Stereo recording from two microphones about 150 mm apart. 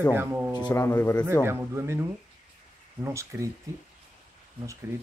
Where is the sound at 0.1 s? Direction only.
15° right (ahead or behind).